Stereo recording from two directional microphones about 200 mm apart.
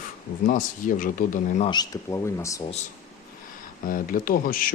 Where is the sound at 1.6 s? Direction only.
20° left (ahead or behind).